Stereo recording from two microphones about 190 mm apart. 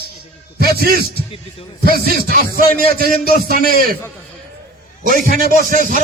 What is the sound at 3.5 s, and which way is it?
Speech, 50° left (ahead or behind).